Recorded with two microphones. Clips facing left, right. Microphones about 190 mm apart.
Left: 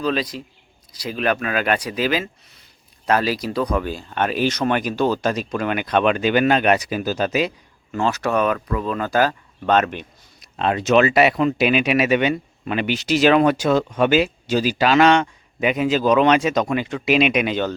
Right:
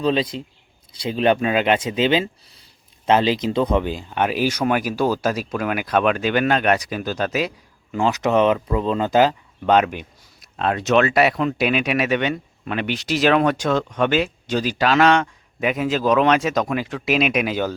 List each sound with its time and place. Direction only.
0.0 s speech: 25° right (ahead or behind); by 7.5 s centre (ahead or behind)
7.9 s speech: 15° right (ahead or behind)